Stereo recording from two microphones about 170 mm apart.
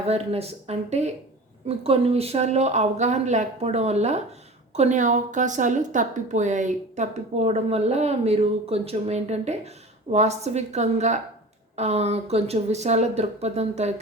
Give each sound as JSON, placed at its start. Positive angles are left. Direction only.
{"t": 0.0, "sound": "speech", "side_deg": -35}